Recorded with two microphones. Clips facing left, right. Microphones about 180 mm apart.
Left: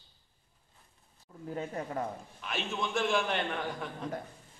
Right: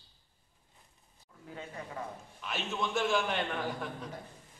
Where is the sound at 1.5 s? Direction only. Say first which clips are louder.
Left 7 dB; 45° left (ahead or behind).